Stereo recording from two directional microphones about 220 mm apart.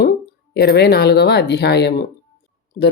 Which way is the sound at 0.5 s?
50° left (ahead or behind).